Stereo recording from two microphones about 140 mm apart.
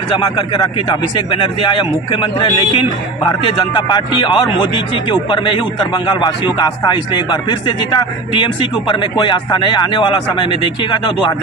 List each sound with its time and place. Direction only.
0.4 s a man's voice: 30° left (ahead or behind)